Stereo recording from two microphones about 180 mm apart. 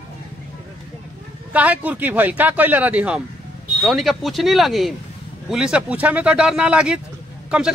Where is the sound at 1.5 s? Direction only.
10° right (ahead or behind).